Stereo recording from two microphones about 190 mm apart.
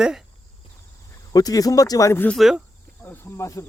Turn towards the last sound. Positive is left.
turn(degrees=15)  # may be behind; listen again after turning